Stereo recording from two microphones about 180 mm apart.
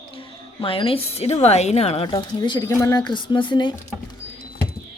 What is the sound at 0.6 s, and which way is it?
A woman's voice, 30° left (ahead or behind).